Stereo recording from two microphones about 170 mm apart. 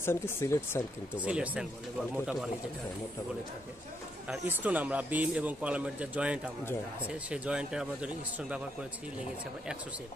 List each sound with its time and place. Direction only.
0.0 s speech: 15° left (ahead or behind)
1.1 s speech: 10° right (ahead or behind)
4.3 s speech: 10° right (ahead or behind)